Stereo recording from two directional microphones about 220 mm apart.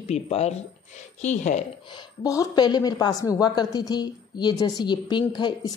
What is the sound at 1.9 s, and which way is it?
A woman's voice, 15° left (ahead or behind).